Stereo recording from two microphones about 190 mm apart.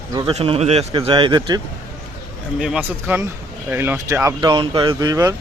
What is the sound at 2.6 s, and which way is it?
Speech, 5° right (ahead or behind).